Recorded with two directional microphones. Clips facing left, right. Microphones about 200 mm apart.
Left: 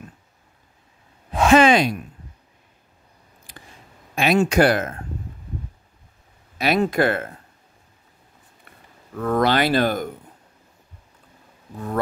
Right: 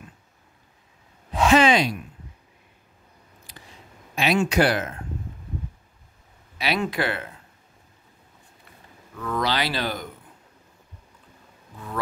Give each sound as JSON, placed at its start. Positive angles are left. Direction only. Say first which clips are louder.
{"t": 1.3, "sound": "speech", "louder": "left 3 dB", "side_deg": 50}
{"t": 3.5, "sound": "a sound", "louder": "left 3 dB", "side_deg": 50}
{"t": 4.1, "sound": "speech", "louder": "left 4 dB", "side_deg": 50}
{"t": 6.6, "sound": "speech", "louder": "left 6 dB", "side_deg": 45}
{"t": 9.1, "sound": "speech", "louder": "left 7 dB", "side_deg": 50}
{"t": 11.7, "sound": "speech", "louder": "left 7 dB", "side_deg": 45}